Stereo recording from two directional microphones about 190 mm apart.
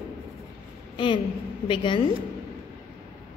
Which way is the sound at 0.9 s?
25° left (ahead or behind).